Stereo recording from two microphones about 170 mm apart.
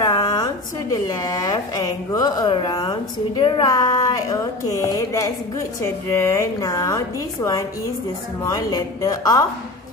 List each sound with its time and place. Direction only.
0.0 s a sound: 20° left (ahead or behind)
0.9 s speech: 20° left (ahead or behind)
8.5 s speech: 20° left (ahead or behind)